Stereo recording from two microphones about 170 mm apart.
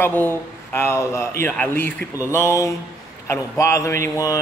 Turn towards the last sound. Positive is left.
turn(degrees=20)  # may be behind; listen again after turning